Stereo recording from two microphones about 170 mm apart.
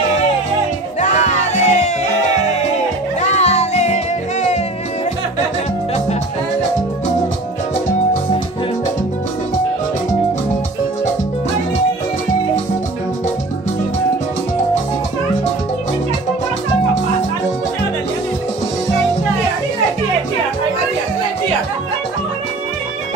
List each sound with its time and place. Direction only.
1.0 s music: 45° left (ahead or behind)
3.2 s music: 40° left (ahead or behind)